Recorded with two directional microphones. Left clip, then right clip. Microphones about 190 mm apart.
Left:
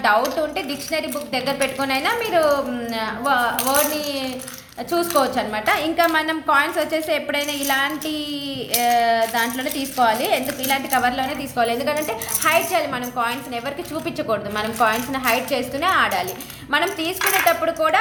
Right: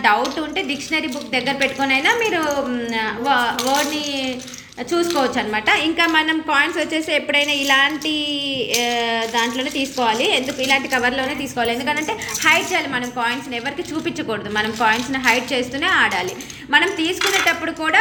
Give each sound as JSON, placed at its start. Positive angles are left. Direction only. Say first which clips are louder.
{"t": 0.5, "sound": "a woman's voice", "louder": "right 3 dB", "side_deg": 0}
{"t": 7.5, "sound": "a sound", "louder": "right 5 dB", "side_deg": 50}
{"t": 8.7, "sound": "a woman's voice", "louder": "left 4 dB", "side_deg": 5}